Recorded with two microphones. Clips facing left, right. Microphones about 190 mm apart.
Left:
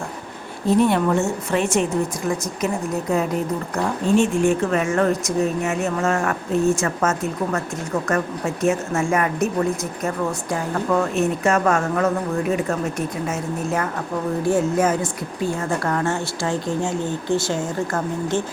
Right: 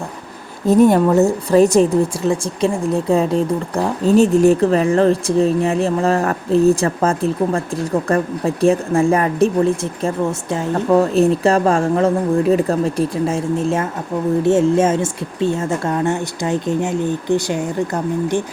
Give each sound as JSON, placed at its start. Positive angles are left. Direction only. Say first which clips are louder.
{"t": 0.7, "sound": "a woman's voice", "louder": "right 6 dB", "side_deg": -40}
{"t": 10.9, "sound": "a woman's voice", "louder": "right 8 dB", "side_deg": -35}